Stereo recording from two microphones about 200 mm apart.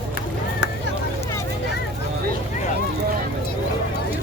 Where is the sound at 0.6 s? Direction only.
60° left (ahead or behind).